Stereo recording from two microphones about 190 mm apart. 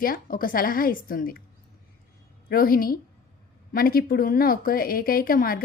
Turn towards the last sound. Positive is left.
turn(degrees=50)  # may be behind; listen again after turning